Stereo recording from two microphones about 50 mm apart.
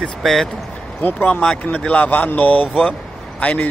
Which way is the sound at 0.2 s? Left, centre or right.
Centre.